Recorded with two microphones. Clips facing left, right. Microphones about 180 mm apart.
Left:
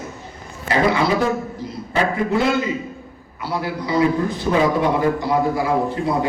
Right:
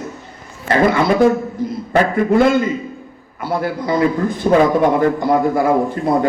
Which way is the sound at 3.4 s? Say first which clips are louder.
Right 5 dB; 50° right (ahead or behind).